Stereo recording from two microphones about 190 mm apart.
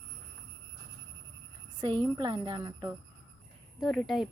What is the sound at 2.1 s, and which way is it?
Speech, 25° right (ahead or behind).